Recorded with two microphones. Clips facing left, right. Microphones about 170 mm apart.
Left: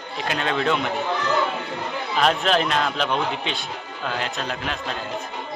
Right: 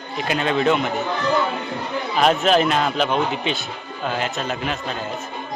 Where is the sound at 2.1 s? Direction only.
5° right (ahead or behind).